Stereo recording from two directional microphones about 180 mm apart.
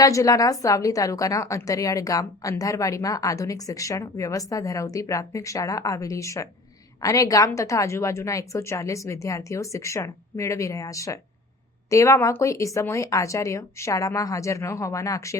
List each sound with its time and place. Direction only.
0.0 s a woman's voice: 20° left (ahead or behind)